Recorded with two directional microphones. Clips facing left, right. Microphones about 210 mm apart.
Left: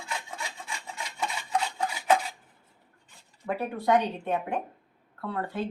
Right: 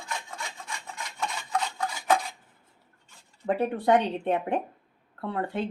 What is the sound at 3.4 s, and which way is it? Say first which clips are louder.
Speech: right 3 dB; 30° right (ahead or behind).